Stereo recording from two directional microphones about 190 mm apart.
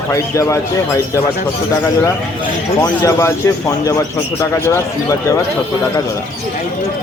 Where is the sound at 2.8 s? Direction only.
20° left (ahead or behind).